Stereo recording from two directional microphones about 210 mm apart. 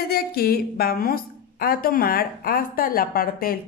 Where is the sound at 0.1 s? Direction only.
45° left (ahead or behind).